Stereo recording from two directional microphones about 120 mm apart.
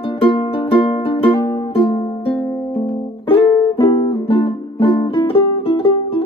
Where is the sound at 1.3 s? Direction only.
30° left (ahead or behind).